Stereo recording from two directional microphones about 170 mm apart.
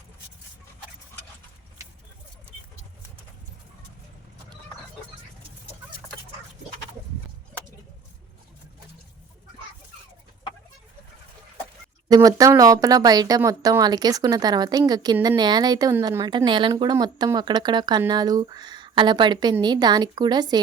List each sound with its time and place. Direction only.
12.0 s speech: 20° right (ahead or behind)